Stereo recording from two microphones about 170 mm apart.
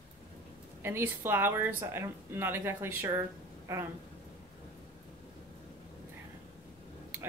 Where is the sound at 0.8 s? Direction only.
15° right (ahead or behind).